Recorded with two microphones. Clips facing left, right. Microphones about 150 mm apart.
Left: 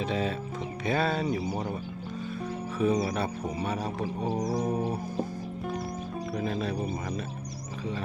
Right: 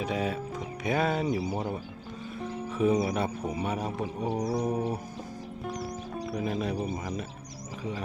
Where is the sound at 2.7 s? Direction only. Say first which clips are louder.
Right 1 dB; 20° right (ahead or behind).